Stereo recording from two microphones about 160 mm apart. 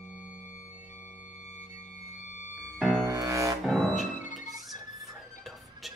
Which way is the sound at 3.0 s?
20° right (ahead or behind).